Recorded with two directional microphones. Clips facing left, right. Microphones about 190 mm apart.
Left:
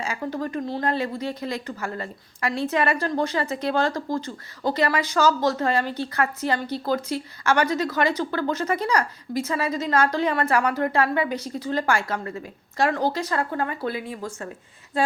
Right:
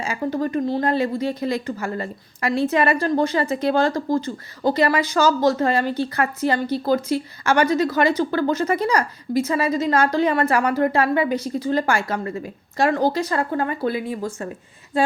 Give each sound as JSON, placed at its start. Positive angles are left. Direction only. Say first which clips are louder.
{"t": 0.2, "sound": "a woman's voice", "louder": "right 9 dB", "side_deg": -30}
{"t": 0.4, "sound": "a woman's voice", "louder": "right 5 dB", "side_deg": -5}